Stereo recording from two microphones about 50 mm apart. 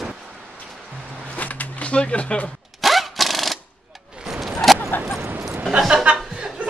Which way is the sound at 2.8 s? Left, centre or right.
Centre.